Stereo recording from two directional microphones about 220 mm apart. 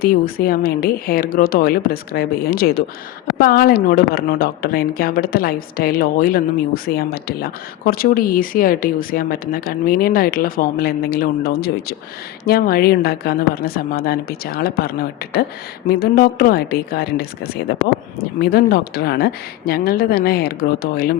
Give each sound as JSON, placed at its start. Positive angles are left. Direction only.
{"t": 0.0, "sound": "a woman's voice", "side_deg": 45}